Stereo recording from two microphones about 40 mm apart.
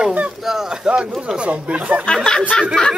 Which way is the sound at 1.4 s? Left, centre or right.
Right.